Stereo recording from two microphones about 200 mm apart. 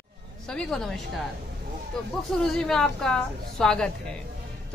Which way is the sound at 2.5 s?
Centre (ahead or behind).